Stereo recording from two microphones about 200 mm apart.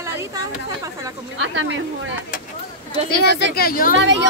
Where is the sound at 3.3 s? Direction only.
55° left (ahead or behind).